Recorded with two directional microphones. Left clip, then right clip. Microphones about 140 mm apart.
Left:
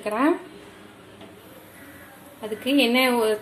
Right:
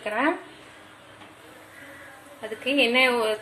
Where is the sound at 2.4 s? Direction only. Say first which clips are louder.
Left 1 dB; 25° left (ahead or behind).